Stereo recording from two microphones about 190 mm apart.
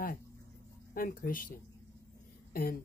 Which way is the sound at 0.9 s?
50° left (ahead or behind).